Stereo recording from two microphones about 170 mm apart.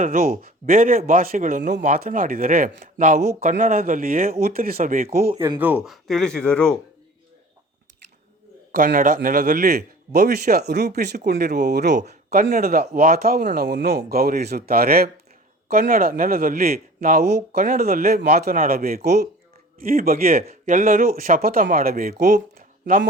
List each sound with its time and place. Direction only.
0.0 s a man's voice: 60° right (ahead or behind)
5.4 s speech: 10° right (ahead or behind); by 6.7 s 5° left (ahead or behind)
8.7 s a man's voice: 55° right (ahead or behind); by 11.2 s 75° right (ahead or behind)
11.2 s speech: 55° right (ahead or behind); by 11.9 s 75° right (ahead or behind)
12.0 s a man's voice: 60° right (ahead or behind)
19.8 s a man's voice: 60° right (ahead or behind)